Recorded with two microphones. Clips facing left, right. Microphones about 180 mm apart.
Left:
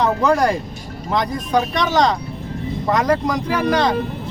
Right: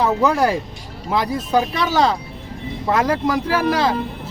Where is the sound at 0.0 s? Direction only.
5° right (ahead or behind).